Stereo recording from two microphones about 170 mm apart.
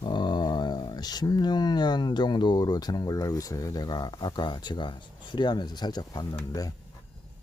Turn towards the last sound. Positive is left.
turn(degrees=20)  # may be behind; listen again after turning